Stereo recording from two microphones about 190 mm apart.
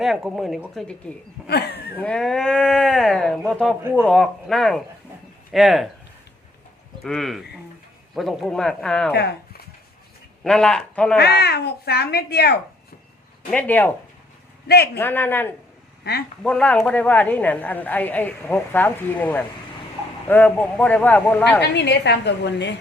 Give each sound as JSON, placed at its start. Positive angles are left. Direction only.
{"t": 0.0, "sound": "speech", "side_deg": 0}
{"t": 1.5, "sound": "a sound", "side_deg": 55}
{"t": 2.0, "sound": "speech", "side_deg": 5}
{"t": 7.0, "sound": "speech", "side_deg": 0}
{"t": 9.1, "sound": "a sound", "side_deg": 55}
{"t": 10.4, "sound": "speech", "side_deg": 5}
{"t": 11.2, "sound": "speech", "side_deg": 60}
{"t": 13.5, "sound": "a woman's voice", "side_deg": 10}
{"t": 14.9, "sound": "a woman's voice", "side_deg": 10}
{"t": 21.7, "sound": "speech", "side_deg": 65}